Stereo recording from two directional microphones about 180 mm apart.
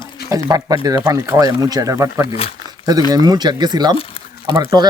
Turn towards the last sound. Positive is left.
turn(degrees=-20)  # may be behind; listen again after turning